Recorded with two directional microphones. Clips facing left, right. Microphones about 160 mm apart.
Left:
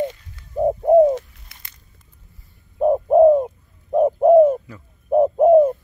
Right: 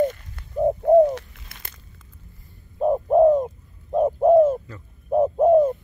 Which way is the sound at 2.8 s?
5° left (ahead or behind).